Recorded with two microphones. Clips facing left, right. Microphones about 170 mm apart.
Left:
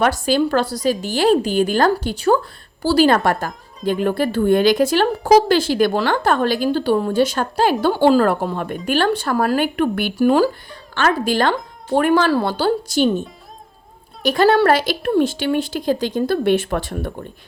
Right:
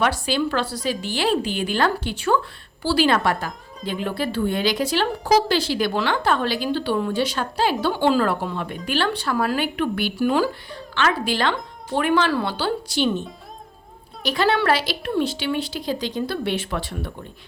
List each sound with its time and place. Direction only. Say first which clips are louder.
0.0 s speech: left 5 dB; 45° left (ahead or behind)